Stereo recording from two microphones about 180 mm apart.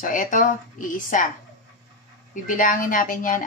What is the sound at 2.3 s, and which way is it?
A woman's voice, 45° left (ahead or behind).